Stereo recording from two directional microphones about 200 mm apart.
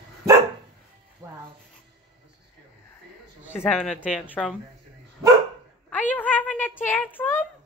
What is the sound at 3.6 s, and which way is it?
Speech, centre (ahead or behind).